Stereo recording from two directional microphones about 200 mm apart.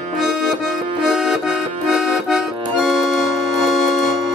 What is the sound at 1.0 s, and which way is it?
Accordion, 5° right (ahead or behind).